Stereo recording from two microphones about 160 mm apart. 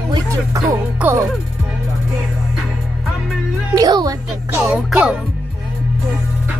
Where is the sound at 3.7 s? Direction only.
25° right (ahead or behind).